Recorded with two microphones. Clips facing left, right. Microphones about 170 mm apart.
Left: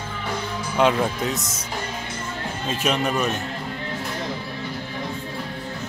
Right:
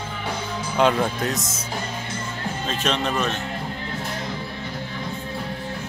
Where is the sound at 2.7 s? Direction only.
10° left (ahead or behind).